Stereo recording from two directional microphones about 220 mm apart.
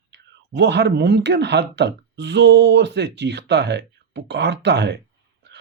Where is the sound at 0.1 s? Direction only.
50° right (ahead or behind).